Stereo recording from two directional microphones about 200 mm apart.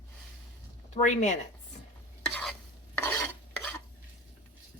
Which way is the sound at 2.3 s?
5° left (ahead or behind).